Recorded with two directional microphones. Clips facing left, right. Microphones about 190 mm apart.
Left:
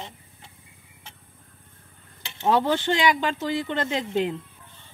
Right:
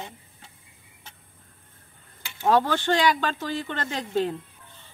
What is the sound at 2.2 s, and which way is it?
Speech, 25° left (ahead or behind).